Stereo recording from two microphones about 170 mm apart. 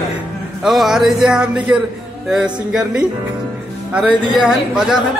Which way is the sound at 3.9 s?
5° right (ahead or behind).